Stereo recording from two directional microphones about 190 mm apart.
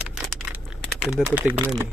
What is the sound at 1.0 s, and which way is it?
Speech, 5° right (ahead or behind).